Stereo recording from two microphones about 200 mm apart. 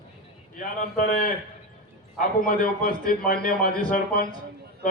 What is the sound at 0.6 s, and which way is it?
A man's voice, 45° left (ahead or behind).